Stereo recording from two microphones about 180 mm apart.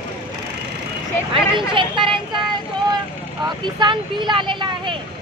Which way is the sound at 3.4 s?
25° right (ahead or behind).